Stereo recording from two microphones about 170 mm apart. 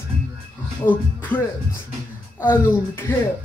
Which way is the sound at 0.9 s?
10° left (ahead or behind).